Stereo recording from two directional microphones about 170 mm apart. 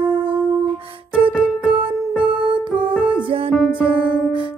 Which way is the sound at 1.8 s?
30° right (ahead or behind).